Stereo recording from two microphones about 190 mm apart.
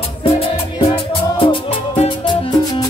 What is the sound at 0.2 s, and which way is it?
Music, 30° left (ahead or behind).